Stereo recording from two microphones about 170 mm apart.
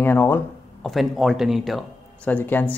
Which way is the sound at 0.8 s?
Centre (ahead or behind).